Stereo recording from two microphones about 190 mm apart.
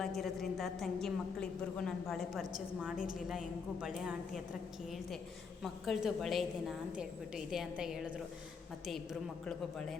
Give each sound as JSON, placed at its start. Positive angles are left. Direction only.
{"t": 0.0, "sound": "a woman's voice", "side_deg": 0}
{"t": 5.6, "sound": "a woman's voice", "side_deg": 0}
{"t": 9.5, "sound": "a woman's voice", "side_deg": 0}